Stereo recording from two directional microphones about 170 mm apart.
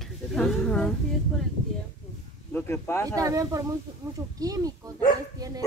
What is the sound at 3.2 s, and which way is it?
Speech, 20° right (ahead or behind).